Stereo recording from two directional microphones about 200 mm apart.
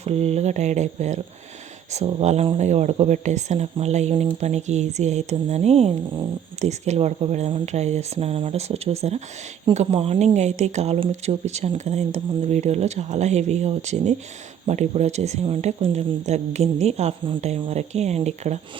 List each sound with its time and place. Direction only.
0.0 s speech: 30° right (ahead or behind)